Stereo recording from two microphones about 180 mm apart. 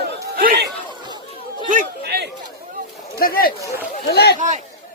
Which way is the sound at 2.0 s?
65° right (ahead or behind).